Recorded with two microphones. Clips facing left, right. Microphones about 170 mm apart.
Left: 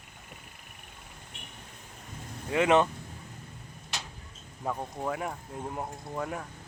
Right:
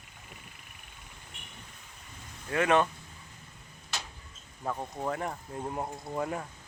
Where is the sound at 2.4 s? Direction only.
20° left (ahead or behind).